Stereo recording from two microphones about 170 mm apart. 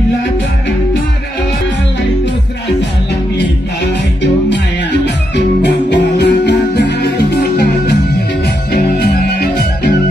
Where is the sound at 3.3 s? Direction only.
90° left.